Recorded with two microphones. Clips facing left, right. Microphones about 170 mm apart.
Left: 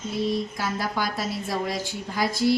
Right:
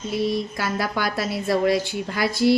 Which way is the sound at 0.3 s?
70° right (ahead or behind).